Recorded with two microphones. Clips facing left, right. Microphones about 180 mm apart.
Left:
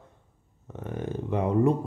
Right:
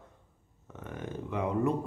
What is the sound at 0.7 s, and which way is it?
Speech, 35° left (ahead or behind).